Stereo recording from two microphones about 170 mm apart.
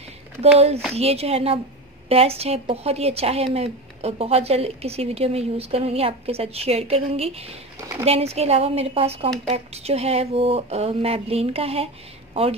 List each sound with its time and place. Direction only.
0.4 s a woman's voice: 35° right (ahead or behind)